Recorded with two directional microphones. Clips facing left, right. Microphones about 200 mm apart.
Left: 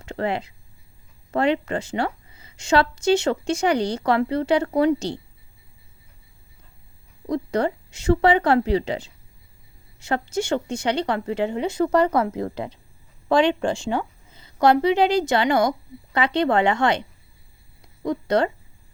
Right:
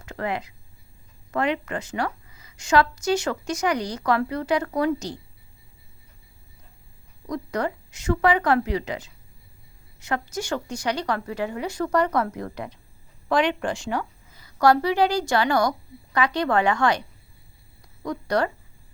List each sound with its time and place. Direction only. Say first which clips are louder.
0.0 s a woman's voice: left 3 dB; 30° left (ahead or behind)
7.3 s a woman's voice: left 4 dB; 30° left (ahead or behind)